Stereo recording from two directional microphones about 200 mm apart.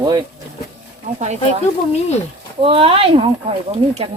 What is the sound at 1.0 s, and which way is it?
Speech, 35° right (ahead or behind).